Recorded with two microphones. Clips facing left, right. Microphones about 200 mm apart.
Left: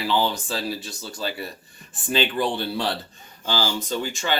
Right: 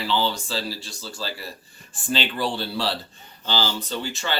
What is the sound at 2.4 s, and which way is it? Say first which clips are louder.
Speech: left 1 dB; 20° left (ahead or behind).